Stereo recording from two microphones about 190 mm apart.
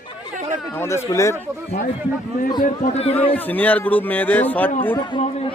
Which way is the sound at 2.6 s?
35° left (ahead or behind).